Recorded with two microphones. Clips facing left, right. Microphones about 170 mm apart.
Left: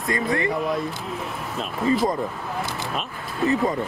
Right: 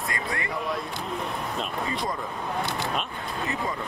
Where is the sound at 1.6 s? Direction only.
Centre (ahead or behind).